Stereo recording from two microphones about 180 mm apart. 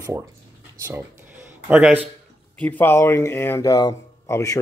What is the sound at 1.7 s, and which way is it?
Speech, 5° right (ahead or behind).